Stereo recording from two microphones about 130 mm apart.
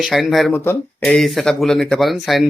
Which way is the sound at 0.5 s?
15° left (ahead or behind).